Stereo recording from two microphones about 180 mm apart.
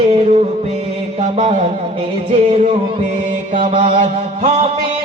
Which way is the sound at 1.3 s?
35° right (ahead or behind).